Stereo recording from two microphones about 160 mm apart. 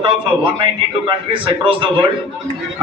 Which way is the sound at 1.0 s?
30° right (ahead or behind).